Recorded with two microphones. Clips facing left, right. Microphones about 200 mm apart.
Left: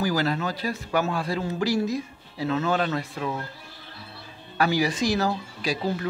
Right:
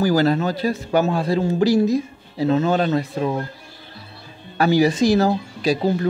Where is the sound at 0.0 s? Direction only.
30° right (ahead or behind).